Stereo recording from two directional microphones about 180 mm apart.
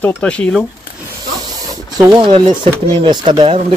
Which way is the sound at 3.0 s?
25° right (ahead or behind).